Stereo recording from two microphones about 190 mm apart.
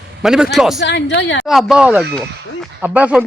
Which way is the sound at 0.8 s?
70° left (ahead or behind).